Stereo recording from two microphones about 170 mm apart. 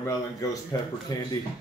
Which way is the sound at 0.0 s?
20° left (ahead or behind).